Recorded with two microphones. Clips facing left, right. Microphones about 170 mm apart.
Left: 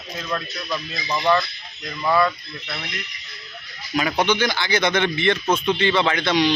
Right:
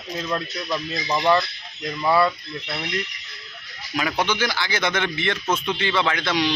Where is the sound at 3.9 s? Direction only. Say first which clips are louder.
Left 3 dB; centre (ahead or behind).